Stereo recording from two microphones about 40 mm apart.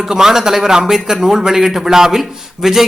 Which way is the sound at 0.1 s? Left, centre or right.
Centre.